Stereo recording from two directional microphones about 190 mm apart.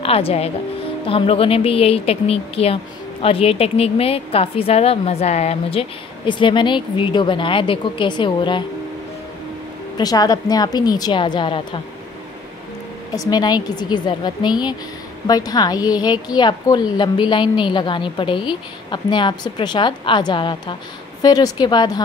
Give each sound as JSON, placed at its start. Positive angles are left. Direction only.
{"t": 0.0, "sound": "a woman's voice", "side_deg": 30}
{"t": 9.9, "sound": "a woman's voice", "side_deg": 20}
{"t": 13.1, "sound": "a woman's voice", "side_deg": 20}